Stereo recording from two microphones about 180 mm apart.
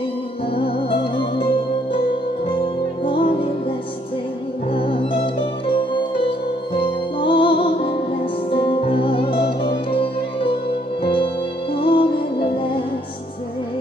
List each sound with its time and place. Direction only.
0.6 s music: 30° left (ahead or behind)
3.1 s music: 30° left (ahead or behind)
4.7 s music: 30° left (ahead or behind)